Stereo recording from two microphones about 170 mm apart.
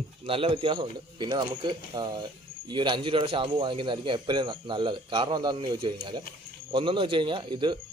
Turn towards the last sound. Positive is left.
turn(degrees=-25)  # may be behind; listen again after turning